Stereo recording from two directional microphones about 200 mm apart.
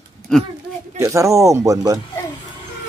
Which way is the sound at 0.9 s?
15° right (ahead or behind).